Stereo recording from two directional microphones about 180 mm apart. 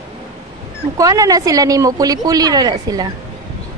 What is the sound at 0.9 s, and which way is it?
A woman's voice, 20° right (ahead or behind).